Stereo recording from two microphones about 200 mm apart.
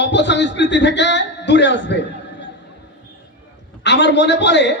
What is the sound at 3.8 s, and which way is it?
Speech, 60° left (ahead or behind).